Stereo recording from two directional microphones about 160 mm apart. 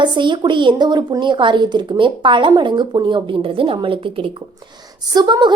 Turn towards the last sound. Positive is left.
turn(degrees=-30)  # may be behind; listen again after turning